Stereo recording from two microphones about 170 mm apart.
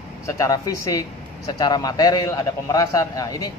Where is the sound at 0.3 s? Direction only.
20° left (ahead or behind).